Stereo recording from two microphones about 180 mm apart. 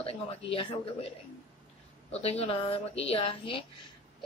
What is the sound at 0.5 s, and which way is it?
Speech, 30° left (ahead or behind).